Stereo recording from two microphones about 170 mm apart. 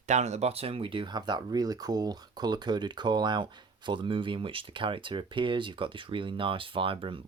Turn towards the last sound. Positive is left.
turn(degrees=-30)  # may be behind; listen again after turning